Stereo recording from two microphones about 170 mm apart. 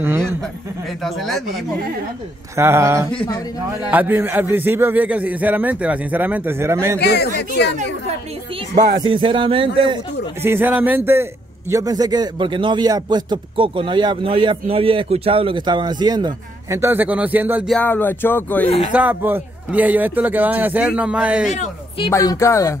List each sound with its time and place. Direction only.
0.8 s speech: centre (ahead or behind)
2.5 s a man's voice: 15° right (ahead or behind)
7.0 s speech: 75° left (ahead or behind)
9.0 s a man's voice: 30° right (ahead or behind)
10.4 s a man's voice: 10° right (ahead or behind)
17.6 s speech: 10° left (ahead or behind)
18.9 s a man's voice: 10° right (ahead or behind)
21.5 s speech: 30° left (ahead or behind)
22.1 s speech: 20° left (ahead or behind)